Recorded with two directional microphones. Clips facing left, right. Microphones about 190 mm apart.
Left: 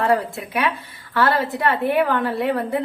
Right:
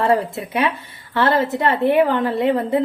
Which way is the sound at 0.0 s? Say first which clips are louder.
Right 2 dB; 25° right (ahead or behind).